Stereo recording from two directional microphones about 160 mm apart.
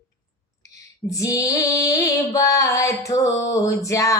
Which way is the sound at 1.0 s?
20° left (ahead or behind).